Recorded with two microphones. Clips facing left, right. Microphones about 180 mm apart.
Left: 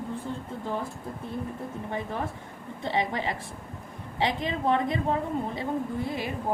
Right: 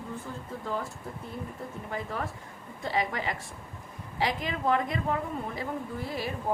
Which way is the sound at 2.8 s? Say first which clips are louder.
Left 2 dB; 25° left (ahead or behind).